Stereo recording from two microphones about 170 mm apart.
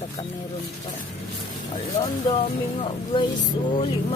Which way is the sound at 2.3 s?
35° left (ahead or behind).